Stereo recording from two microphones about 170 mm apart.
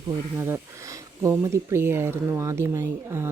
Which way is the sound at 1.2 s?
15° right (ahead or behind).